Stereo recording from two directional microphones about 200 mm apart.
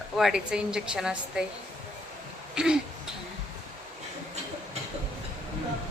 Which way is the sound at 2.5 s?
5° right (ahead or behind).